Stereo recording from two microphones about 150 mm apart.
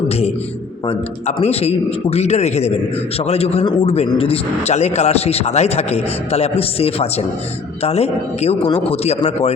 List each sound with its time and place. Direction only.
1.4 s a man's voice: 45° left (ahead or behind)